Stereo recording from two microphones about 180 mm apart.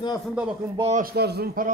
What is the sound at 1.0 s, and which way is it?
Speech, 65° right (ahead or behind).